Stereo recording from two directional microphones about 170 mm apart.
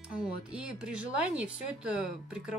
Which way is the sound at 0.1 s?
5° right (ahead or behind).